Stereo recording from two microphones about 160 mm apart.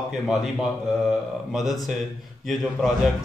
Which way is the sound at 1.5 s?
Centre (ahead or behind).